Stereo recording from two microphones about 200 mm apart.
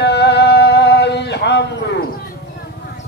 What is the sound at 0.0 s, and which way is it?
Music, 55° left (ahead or behind).